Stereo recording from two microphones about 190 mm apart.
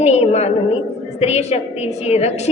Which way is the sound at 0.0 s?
35° left (ahead or behind).